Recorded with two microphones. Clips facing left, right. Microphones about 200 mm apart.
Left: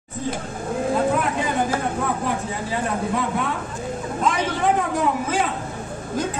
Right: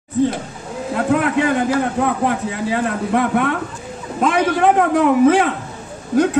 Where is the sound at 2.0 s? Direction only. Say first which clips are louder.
Right 5 dB; 65° right (ahead or behind).